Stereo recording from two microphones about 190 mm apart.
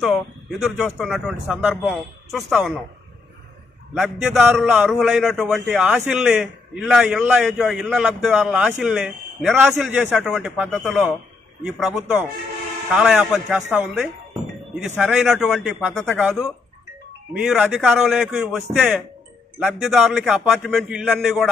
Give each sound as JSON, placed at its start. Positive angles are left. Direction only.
{"t": 0.0, "sound": "a man's voice", "side_deg": 0}
{"t": 3.9, "sound": "a man's voice", "side_deg": 0}